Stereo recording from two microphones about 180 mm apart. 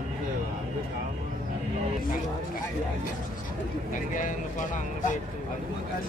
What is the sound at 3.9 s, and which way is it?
Speech, 45° left (ahead or behind).